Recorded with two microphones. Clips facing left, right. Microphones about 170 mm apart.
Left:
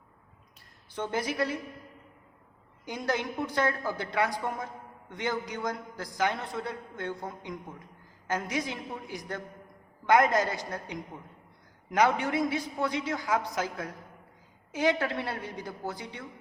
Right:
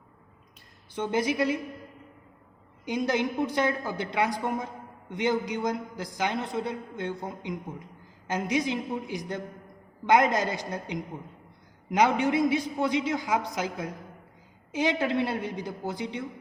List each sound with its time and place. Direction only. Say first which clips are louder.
0.9 s a woman's voice: right 4 dB; 20° right (ahead or behind)
2.8 s a woman's voice: right 5 dB; 20° right (ahead or behind)